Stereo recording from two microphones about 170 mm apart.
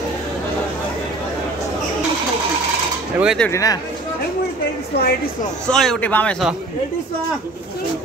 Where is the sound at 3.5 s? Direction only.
20° left (ahead or behind).